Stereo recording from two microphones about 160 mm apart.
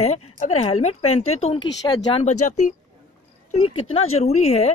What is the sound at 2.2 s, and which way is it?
A woman's voice, 45° left (ahead or behind).